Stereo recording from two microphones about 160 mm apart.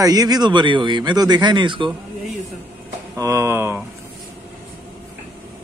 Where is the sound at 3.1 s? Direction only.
20° right (ahead or behind).